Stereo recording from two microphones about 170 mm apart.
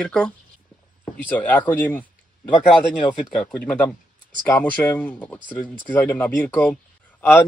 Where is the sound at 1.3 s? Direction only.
10° left (ahead or behind).